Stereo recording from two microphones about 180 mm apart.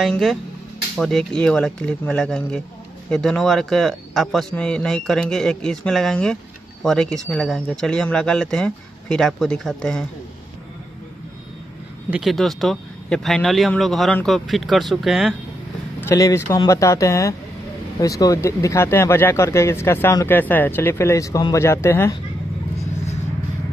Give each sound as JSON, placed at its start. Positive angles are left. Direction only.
{"t": 0.0, "sound": "a man's voice", "side_deg": 0}
{"t": 12.1, "sound": "a man's voice", "side_deg": 0}
{"t": 16.0, "sound": "speech", "side_deg": 15}